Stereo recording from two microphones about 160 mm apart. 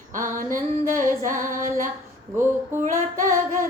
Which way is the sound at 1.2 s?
55° right (ahead or behind).